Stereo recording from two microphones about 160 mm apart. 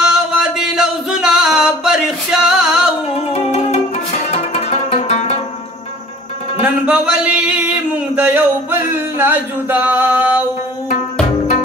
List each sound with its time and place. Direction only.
0.0 s music: 5° right (ahead or behind)
3.3 s music: 40° left (ahead or behind)
6.6 s a sound: 10° right (ahead or behind)